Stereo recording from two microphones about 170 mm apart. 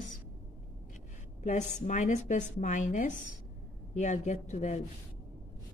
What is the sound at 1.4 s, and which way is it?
A woman's voice, 45° left (ahead or behind).